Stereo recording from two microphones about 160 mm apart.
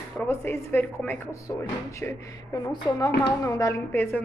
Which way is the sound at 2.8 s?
30° left (ahead or behind).